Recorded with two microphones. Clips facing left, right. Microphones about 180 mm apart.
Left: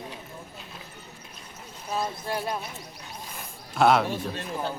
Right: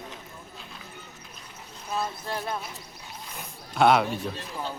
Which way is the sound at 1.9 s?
10° left (ahead or behind).